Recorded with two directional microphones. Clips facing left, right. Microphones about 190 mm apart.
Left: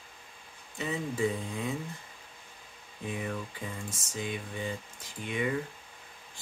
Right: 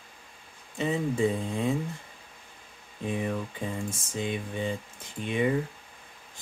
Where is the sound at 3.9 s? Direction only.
25° right (ahead or behind).